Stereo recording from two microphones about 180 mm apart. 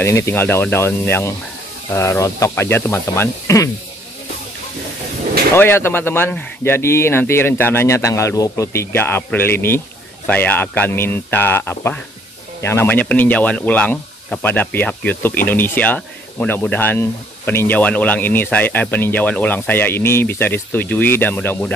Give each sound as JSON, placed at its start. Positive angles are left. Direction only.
{"t": 0.0, "sound": "speech", "side_deg": 15}
{"t": 5.5, "sound": "speech", "side_deg": 15}